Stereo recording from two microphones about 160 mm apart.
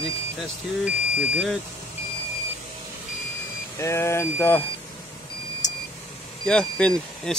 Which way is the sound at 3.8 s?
15° left (ahead or behind).